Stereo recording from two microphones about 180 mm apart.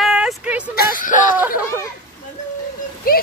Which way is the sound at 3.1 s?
55° left (ahead or behind).